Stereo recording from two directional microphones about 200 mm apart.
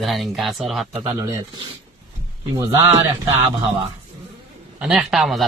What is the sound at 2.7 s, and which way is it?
Speech, 25° right (ahead or behind).